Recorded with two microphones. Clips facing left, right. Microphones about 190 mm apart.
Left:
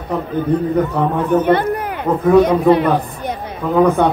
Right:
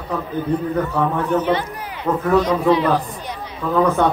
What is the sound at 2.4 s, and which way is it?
Speech, 55° left (ahead or behind).